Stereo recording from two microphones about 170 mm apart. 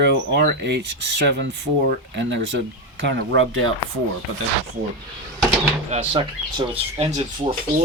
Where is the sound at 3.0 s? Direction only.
90° right.